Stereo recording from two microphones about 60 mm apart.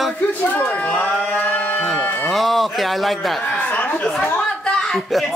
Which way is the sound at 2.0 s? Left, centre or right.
Left.